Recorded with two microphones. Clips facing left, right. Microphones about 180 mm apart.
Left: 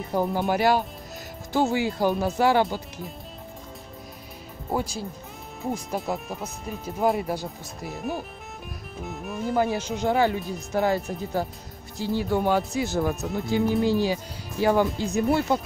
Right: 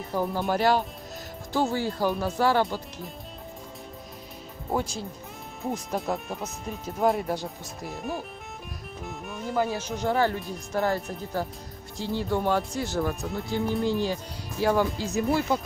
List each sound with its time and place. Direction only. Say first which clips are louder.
0.1 s speech: left 3 dB; 20° left (ahead or behind)
0.5 s speech: right 1 dB; 10° left (ahead or behind)
2.0 s speech: left 2 dB; 20° left (ahead or behind)
4.6 s speech: left 1 dB; 5° left (ahead or behind)
9.6 s speech: left 2 dB; 15° left (ahead or behind)